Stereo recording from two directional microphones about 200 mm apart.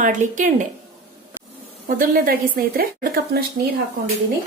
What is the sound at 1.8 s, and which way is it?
A woman's voice, 45° right (ahead or behind).